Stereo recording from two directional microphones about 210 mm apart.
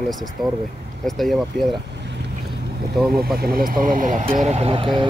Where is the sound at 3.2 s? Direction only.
45° right (ahead or behind); by 5.0 s 25° right (ahead or behind).